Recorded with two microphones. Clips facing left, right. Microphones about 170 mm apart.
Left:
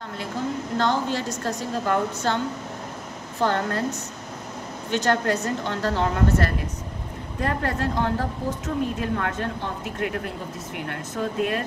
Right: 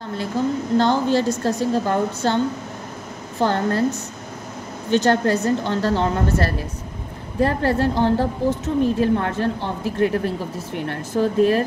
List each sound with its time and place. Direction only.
0.7 s speech: 30° right (ahead or behind)
3.3 s speech: 30° right (ahead or behind)
4.9 s a woman's voice: 30° right (ahead or behind)